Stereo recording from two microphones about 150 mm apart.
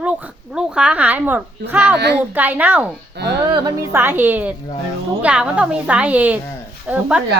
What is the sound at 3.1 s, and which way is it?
Speech, 90° right.